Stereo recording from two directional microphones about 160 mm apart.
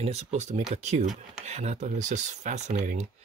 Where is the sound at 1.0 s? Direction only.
Centre (ahead or behind).